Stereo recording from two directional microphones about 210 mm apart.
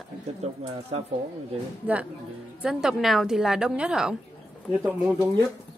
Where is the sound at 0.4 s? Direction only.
25° right (ahead or behind).